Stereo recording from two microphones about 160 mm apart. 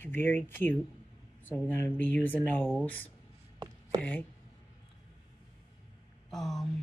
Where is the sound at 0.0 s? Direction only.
10° left (ahead or behind).